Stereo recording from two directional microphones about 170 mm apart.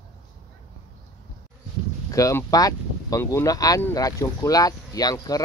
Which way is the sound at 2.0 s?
20° left (ahead or behind).